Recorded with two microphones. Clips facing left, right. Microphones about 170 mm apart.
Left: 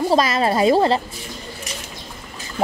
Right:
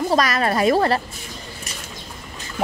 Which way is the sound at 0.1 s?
25° left (ahead or behind).